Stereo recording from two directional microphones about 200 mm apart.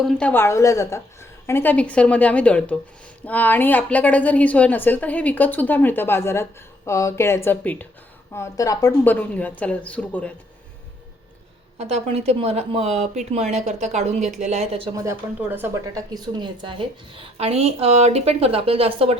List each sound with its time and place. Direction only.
0.0 s a woman's voice: 5° left (ahead or behind)
11.8 s speech: 30° right (ahead or behind)
15.4 s speech: 10° right (ahead or behind); by 19.1 s 30° right (ahead or behind)